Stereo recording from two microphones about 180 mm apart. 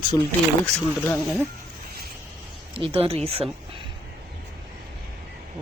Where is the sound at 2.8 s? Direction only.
35° right (ahead or behind).